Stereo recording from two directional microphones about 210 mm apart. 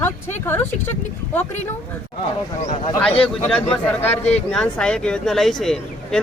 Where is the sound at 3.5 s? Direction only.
5° left (ahead or behind).